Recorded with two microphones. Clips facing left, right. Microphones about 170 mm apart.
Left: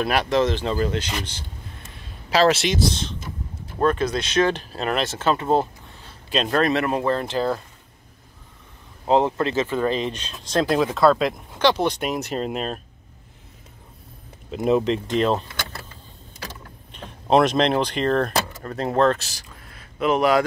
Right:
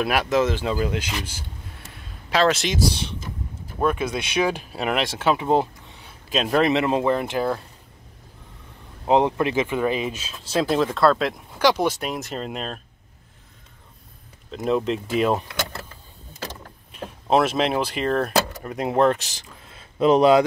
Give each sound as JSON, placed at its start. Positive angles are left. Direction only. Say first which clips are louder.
{"t": 0.0, "sound": "speech", "louder": "even", "side_deg": -5}
{"t": 2.3, "sound": "speech", "louder": "left 2 dB", "side_deg": 5}
{"t": 2.8, "sound": "a sound", "louder": "even", "side_deg": -10}
{"t": 3.8, "sound": "speech", "louder": "left 2 dB", "side_deg": -10}
{"t": 9.0, "sound": "speech", "louder": "even", "side_deg": -15}
{"t": 14.5, "sound": "speech", "louder": "left 3 dB", "side_deg": 5}
{"t": 15.0, "sound": "speech", "louder": "even", "side_deg": -10}
{"t": 16.9, "sound": "speech", "louder": "left 2 dB", "side_deg": -5}